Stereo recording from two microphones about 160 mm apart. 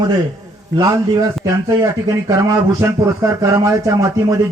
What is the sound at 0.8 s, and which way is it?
Speech, 20° right (ahead or behind).